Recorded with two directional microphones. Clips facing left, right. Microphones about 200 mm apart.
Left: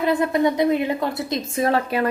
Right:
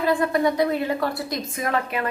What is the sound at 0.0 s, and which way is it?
A woman's voice, 20° left (ahead or behind).